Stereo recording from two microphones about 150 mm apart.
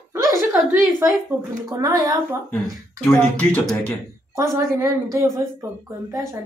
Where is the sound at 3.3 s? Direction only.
5° left (ahead or behind).